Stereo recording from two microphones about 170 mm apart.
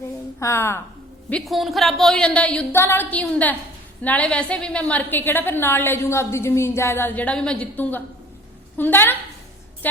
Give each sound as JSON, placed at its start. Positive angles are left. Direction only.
{"t": 0.3, "sound": "a woman's voice", "side_deg": 15}
{"t": 1.3, "sound": "a woman's voice", "side_deg": 0}